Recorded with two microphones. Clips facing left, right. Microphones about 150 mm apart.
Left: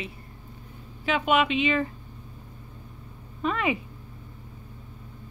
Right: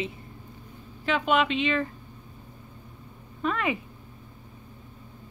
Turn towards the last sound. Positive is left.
turn(degrees=5)  # may be behind; listen again after turning